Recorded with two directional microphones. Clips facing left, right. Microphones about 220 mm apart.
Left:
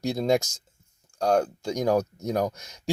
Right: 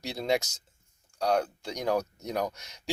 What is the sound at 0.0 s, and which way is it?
Speech, 45° left (ahead or behind).